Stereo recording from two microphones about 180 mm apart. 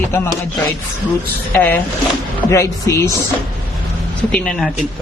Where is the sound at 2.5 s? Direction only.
15° left (ahead or behind).